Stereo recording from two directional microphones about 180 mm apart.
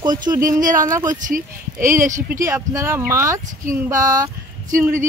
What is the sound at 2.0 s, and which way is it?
Speech, 45° right (ahead or behind).